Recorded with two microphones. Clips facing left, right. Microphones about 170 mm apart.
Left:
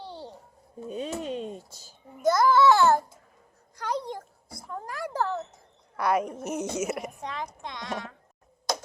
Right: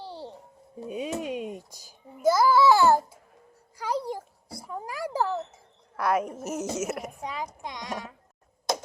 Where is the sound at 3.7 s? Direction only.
5° right (ahead or behind).